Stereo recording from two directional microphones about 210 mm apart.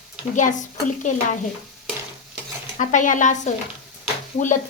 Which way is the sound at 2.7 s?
35° left (ahead or behind).